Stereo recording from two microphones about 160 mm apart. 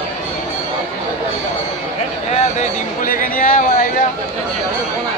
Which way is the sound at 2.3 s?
55° left (ahead or behind).